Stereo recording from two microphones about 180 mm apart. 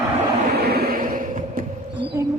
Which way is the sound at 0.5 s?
60° right (ahead or behind).